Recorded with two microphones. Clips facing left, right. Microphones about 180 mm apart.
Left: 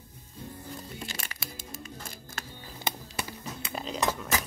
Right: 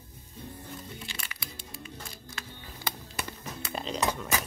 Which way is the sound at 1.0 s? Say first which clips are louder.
Left 3 dB; 45° left (ahead or behind).